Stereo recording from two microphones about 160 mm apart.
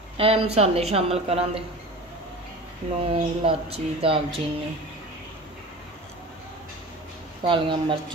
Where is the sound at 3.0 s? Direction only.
35° right (ahead or behind).